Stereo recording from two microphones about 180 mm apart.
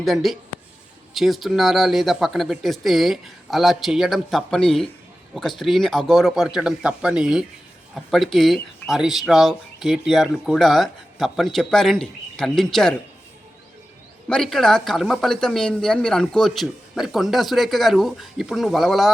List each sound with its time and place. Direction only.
0.0 s speech: centre (ahead or behind)
14.3 s speech: 5° left (ahead or behind)